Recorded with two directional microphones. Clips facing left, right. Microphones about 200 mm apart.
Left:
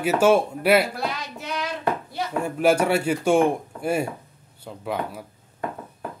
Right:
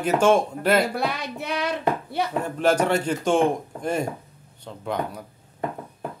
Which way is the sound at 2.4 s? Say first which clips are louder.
Left 2 dB; 10° left (ahead or behind).